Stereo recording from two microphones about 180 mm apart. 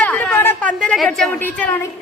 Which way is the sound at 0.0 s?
5° left (ahead or behind).